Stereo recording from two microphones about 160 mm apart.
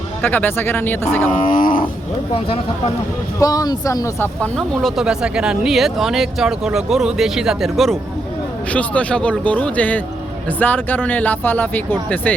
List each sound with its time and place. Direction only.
0.2 s speech: 10° left (ahead or behind)
1.5 s cattle: 60° left (ahead or behind)
3.4 s speech: 20° left (ahead or behind)
4.4 s speech: 5° left (ahead or behind)